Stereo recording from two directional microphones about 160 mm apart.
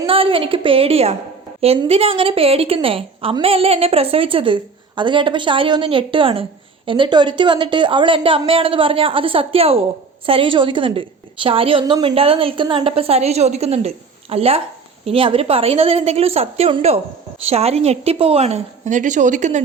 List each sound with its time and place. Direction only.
0.0 s a woman's voice: 35° right (ahead or behind)